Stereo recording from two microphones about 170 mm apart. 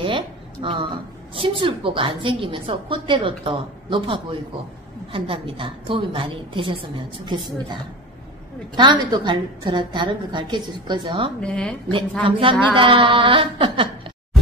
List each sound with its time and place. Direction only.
0.0 s a sound: 30° right (ahead or behind)
1.3 s a woman's voice: 30° right (ahead or behind)
11.4 s a woman's voice: 5° left (ahead or behind)
12.2 s a woman's voice: 30° right (ahead or behind)